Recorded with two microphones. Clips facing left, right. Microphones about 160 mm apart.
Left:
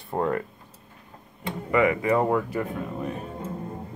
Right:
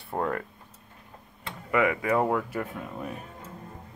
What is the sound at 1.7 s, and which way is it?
Speech, centre (ahead or behind).